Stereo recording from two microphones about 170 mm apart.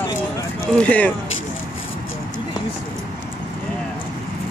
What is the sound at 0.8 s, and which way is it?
Speech, 10° left (ahead or behind).